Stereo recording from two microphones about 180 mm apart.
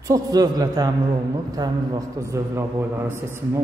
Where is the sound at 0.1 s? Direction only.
20° right (ahead or behind).